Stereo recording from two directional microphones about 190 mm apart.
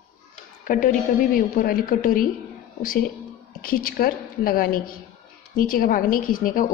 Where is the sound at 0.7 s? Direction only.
45° left (ahead or behind).